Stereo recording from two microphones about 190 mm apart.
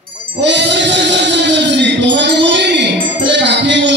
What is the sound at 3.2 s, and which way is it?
Music, 65° right (ahead or behind).